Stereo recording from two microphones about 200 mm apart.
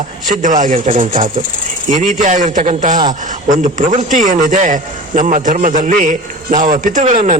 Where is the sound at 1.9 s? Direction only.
40° right (ahead or behind).